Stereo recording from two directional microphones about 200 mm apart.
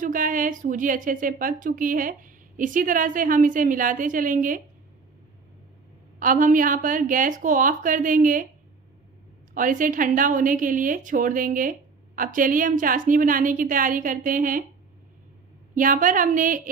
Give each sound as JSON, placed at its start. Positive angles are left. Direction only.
{"t": 0.0, "sound": "a woman's voice", "side_deg": -40}
{"t": 6.1, "sound": "a woman's voice", "side_deg": -40}
{"t": 9.5, "sound": "a woman's voice", "side_deg": -40}
{"t": 15.7, "sound": "a woman's voice", "side_deg": -40}